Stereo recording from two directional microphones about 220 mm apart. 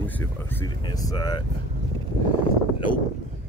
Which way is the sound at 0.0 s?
10° left (ahead or behind).